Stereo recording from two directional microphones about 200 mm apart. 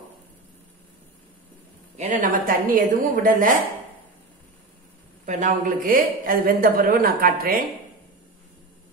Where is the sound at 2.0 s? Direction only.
40° right (ahead or behind).